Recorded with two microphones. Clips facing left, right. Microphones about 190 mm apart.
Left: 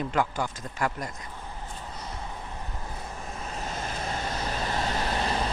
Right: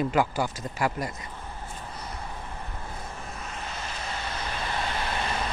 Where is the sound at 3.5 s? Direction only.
45° left (ahead or behind).